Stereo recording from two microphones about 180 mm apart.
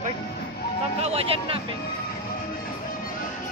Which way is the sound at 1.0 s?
35° right (ahead or behind).